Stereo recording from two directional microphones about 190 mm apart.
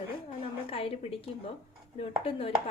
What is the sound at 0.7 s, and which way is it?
A woman's voice, 30° left (ahead or behind).